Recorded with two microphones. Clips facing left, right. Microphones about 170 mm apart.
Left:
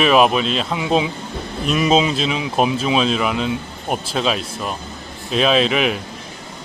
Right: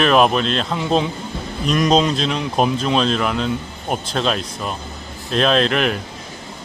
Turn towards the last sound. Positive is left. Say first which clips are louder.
# even
turn(degrees=5)  # may be behind; listen again after turning